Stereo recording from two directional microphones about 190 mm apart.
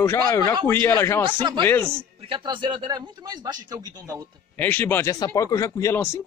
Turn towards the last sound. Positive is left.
turn(degrees=10)  # may be behind; listen again after turning